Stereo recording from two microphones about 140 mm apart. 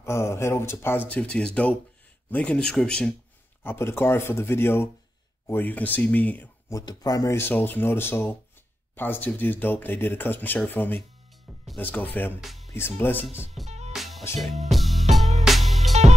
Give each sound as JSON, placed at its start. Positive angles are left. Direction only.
{"t": 0.0, "sound": "speech", "side_deg": 20}
{"t": 3.6, "sound": "speech", "side_deg": 15}
{"t": 6.7, "sound": "speech", "side_deg": 30}
{"t": 12.4, "sound": "speech", "side_deg": 0}
{"t": 12.7, "sound": "speech", "side_deg": 15}
{"t": 13.7, "sound": "music", "side_deg": -50}
{"t": 13.9, "sound": "music", "side_deg": 0}